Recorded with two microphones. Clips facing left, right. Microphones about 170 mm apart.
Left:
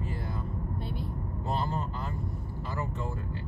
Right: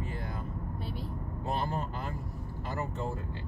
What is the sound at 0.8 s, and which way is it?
Vehicle, centre (ahead or behind).